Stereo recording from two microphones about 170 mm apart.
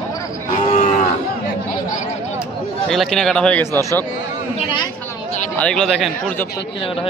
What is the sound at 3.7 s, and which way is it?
Speech, 20° right (ahead or behind).